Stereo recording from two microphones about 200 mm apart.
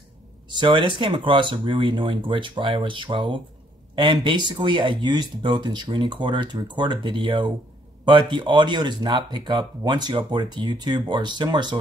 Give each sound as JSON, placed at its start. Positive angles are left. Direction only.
{"t": 0.5, "sound": "speech", "side_deg": -25}